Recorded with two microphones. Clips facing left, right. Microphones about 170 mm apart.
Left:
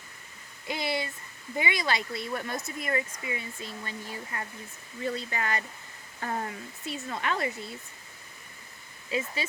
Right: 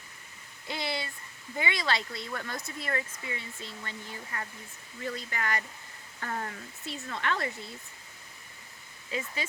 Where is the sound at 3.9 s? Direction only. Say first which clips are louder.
Left 3 dB; 25° left (ahead or behind).